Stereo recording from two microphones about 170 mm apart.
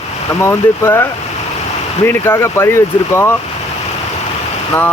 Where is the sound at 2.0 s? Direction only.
15° left (ahead or behind).